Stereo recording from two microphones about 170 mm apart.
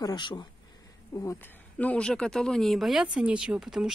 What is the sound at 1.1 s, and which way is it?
A woman's voice, 15° left (ahead or behind).